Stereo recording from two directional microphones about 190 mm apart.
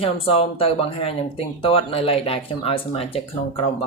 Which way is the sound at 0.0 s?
30° left (ahead or behind).